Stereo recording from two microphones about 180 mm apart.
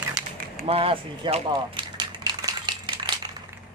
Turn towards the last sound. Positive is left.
turn(degrees=-25)  # may be behind; listen again after turning